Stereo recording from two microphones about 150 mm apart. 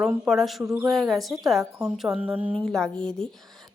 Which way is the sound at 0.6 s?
20° right (ahead or behind).